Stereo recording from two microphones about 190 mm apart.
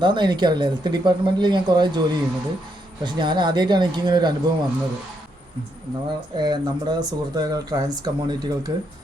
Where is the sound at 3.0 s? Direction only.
25° right (ahead or behind).